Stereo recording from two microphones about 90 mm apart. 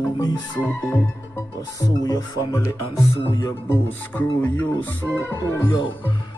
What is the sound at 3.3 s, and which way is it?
Speech, 40° left (ahead or behind).